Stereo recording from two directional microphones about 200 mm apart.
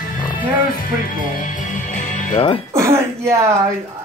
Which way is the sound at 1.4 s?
40° left (ahead or behind).